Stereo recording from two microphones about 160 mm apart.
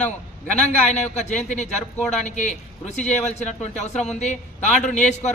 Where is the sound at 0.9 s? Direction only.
50° left (ahead or behind).